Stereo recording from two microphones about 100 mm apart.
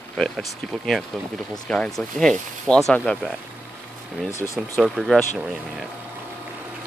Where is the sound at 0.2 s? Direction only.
Centre (ahead or behind).